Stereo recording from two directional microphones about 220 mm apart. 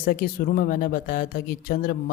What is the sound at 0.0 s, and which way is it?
A man's voice, 40° left (ahead or behind).